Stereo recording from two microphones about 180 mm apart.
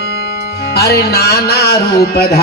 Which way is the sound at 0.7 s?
60° left (ahead or behind).